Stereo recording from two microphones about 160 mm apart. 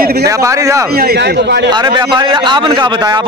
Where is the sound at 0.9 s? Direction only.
80° right.